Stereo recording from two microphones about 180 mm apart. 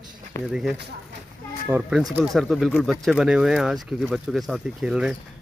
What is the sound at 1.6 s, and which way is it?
Speech, 5° right (ahead or behind).